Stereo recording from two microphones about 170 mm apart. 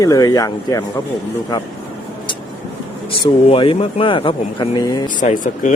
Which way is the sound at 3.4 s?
30° left (ahead or behind).